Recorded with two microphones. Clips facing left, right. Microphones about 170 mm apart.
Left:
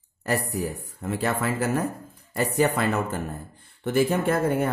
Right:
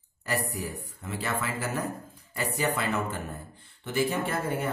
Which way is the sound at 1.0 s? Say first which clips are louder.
Left 6 dB; 50° left (ahead or behind).